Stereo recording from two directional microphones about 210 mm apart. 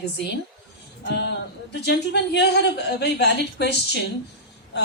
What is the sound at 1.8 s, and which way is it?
Speech, 55° left (ahead or behind).